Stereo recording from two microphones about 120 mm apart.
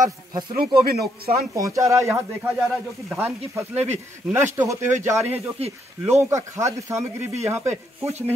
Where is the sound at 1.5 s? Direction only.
25° right (ahead or behind).